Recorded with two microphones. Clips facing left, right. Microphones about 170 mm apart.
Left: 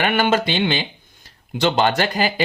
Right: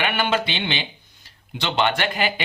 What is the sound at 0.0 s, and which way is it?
Speech, 45° left (ahead or behind).